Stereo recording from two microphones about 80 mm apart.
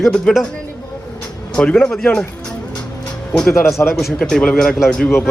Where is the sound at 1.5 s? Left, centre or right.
Centre.